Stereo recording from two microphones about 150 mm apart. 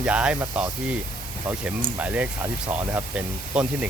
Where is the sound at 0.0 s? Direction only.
10° right (ahead or behind).